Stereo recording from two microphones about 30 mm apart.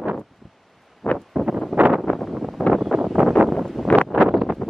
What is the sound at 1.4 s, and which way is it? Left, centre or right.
Wind noise, right.